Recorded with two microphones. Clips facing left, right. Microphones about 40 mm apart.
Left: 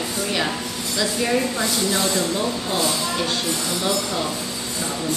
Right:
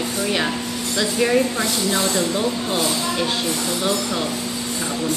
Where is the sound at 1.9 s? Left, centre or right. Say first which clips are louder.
Right 2 dB; centre.